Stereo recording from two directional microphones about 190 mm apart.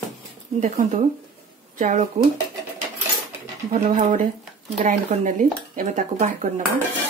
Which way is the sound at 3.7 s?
40° right (ahead or behind).